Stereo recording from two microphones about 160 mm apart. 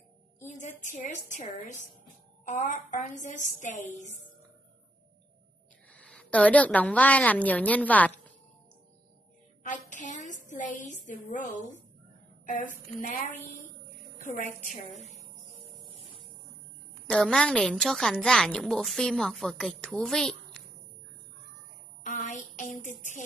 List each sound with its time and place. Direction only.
0.4 s a woman's voice: 50° left (ahead or behind)
5.9 s a woman's voice: 10° left (ahead or behind)
9.6 s a woman's voice: 50° left (ahead or behind)
14.2 s a woman's voice: 50° left (ahead or behind)
17.1 s a woman's voice: 5° left (ahead or behind)
22.0 s a sound: 50° left (ahead or behind)